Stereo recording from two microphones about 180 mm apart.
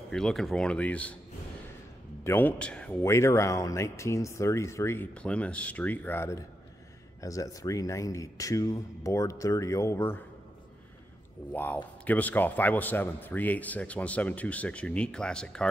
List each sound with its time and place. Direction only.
0.1 s speech: centre (ahead or behind)
2.2 s speech: 10° left (ahead or behind)
11.5 s speech: 10° left (ahead or behind)